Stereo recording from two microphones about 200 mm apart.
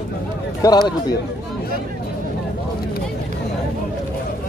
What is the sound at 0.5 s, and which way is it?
Speech, 20° left (ahead or behind).